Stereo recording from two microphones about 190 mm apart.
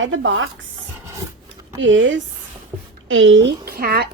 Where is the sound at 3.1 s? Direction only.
85° right.